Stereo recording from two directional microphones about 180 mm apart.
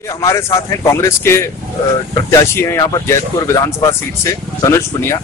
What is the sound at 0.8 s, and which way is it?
Speech, 15° left (ahead or behind).